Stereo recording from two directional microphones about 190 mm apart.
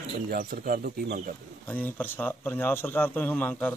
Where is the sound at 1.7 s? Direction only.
10° left (ahead or behind).